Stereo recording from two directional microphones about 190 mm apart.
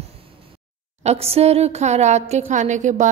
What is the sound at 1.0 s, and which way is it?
A woman's voice, 30° right (ahead or behind).